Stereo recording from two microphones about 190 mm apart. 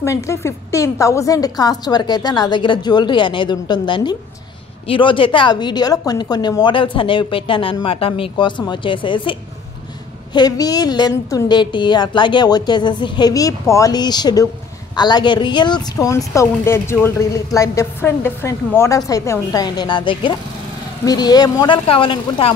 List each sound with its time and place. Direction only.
0.0 s a woman's voice: 15° left (ahead or behind)